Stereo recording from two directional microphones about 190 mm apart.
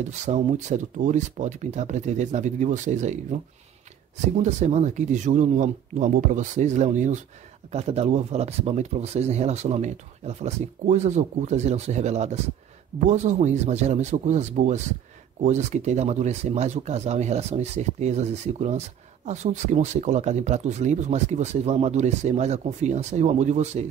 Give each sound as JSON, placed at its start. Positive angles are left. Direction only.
{"t": 0.2, "sound": "speech", "side_deg": -40}
{"t": 4.4, "sound": "speech", "side_deg": -35}